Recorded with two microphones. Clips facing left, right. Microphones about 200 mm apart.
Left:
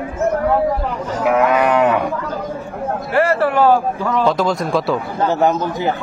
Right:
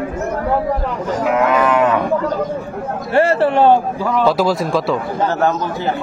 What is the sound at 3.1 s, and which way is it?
Speech, 30° right (ahead or behind).